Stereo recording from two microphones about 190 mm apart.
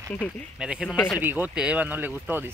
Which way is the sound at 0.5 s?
5° right (ahead or behind).